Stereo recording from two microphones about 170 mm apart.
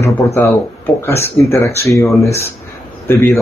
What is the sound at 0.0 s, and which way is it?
Speech, 15° left (ahead or behind).